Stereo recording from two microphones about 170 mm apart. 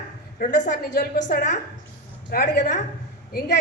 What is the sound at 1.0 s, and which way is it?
Speech, 50° left (ahead or behind).